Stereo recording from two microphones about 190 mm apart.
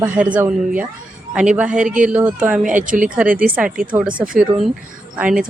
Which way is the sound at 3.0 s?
5° right (ahead or behind).